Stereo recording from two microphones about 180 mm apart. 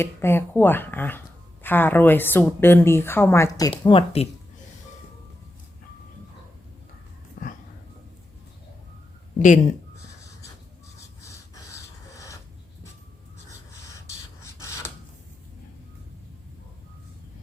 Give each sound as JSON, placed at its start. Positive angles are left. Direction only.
{"t": 0.0, "sound": "a woman's voice", "side_deg": 15}
{"t": 3.7, "sound": "speech", "side_deg": 30}
{"t": 9.4, "sound": "speech", "side_deg": 45}
{"t": 11.2, "sound": "snort", "side_deg": 15}
{"t": 13.9, "sound": "a sound", "side_deg": 15}